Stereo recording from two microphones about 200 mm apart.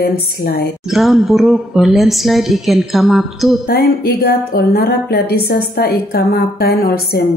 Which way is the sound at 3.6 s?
50° left (ahead or behind).